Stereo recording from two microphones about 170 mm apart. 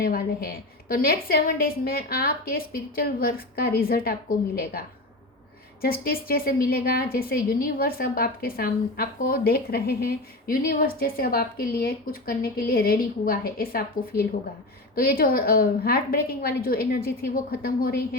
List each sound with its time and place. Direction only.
0.0 s a woman's voice: 65° left (ahead or behind)
5.8 s a woman's voice: 60° left (ahead or behind)